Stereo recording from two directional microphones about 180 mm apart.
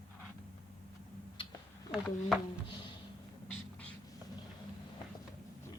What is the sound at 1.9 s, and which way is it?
Speech, centre (ahead or behind).